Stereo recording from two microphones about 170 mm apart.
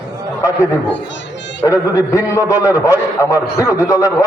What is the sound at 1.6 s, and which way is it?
A man's voice, 20° left (ahead or behind).